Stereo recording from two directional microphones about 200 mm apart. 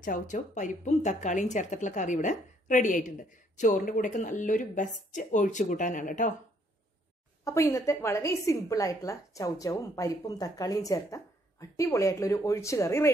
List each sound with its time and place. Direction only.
0.0 s a woman's voice: 40° left (ahead or behind)
7.4 s a woman's voice: 15° left (ahead or behind)